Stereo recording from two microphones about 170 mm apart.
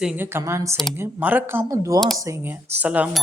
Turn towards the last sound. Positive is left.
turn(degrees=-5)  # may be behind; listen again after turning